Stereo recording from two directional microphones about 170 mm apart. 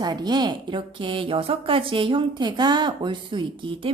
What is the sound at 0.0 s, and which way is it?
A woman's voice, 25° right (ahead or behind).